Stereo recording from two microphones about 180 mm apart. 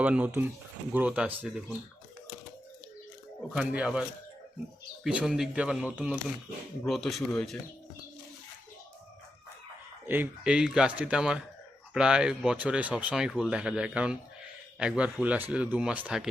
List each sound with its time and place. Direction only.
0.0 s a man's voice: 10° right (ahead or behind)
3.5 s speech: 5° right (ahead or behind)
5.0 s speech: 5° right (ahead or behind)
10.1 s a man's voice: 10° right (ahead or behind)